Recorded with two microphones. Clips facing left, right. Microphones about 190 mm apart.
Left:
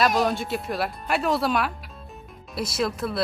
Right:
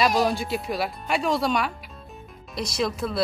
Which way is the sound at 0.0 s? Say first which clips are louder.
Even; centre (ahead or behind).